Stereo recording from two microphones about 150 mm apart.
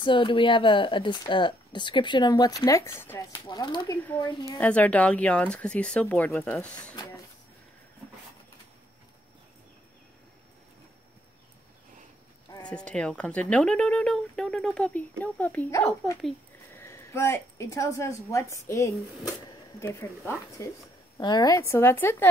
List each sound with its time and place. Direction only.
0.0 s speech: 35° left (ahead or behind); by 3.3 s 15° left (ahead or behind)
3.4 s speech: 30° left (ahead or behind)
4.6 s speech: 10° left (ahead or behind)
12.6 s a woman's voice: 5° left (ahead or behind)